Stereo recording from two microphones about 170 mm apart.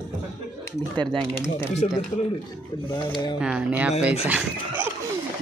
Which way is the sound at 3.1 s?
25° left (ahead or behind).